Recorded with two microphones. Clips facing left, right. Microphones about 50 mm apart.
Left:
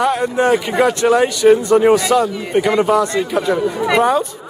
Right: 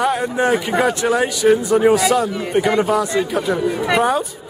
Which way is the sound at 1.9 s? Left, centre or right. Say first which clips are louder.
Left 2 dB; centre.